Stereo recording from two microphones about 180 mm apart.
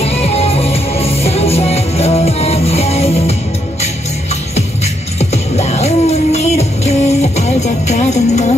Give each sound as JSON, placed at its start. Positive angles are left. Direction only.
{"t": 0.0, "sound": "music", "side_deg": 35}
{"t": 5.2, "sound": "music", "side_deg": 35}